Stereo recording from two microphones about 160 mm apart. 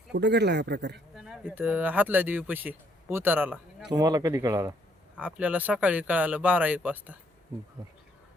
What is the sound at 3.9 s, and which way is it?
A man's voice, 25° right (ahead or behind).